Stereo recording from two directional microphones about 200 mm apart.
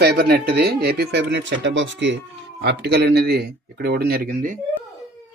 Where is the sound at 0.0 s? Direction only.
55° right (ahead or behind).